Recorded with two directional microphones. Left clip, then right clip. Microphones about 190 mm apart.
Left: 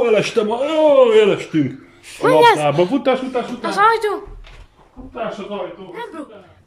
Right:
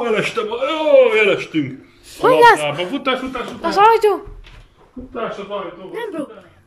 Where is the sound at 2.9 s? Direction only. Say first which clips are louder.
Left 3 dB; 25° left (ahead or behind).